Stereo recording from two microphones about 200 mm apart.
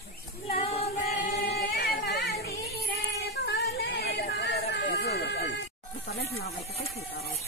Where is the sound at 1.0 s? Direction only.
45° left (ahead or behind).